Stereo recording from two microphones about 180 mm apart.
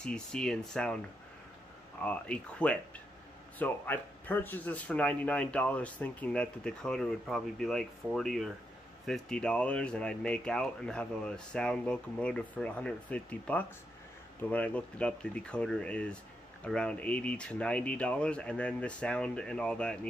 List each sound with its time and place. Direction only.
0.0 s speech: 5° left (ahead or behind)